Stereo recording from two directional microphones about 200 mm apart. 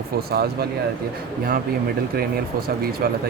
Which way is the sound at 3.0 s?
50° right (ahead or behind).